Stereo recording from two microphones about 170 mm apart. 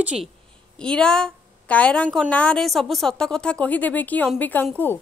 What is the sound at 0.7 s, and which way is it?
A woman's voice, 5° left (ahead or behind).